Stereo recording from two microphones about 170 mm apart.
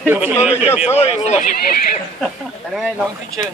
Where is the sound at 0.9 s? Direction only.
35° left (ahead or behind).